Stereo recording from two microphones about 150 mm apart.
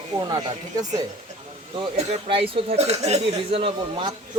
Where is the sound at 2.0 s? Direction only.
40° right (ahead or behind).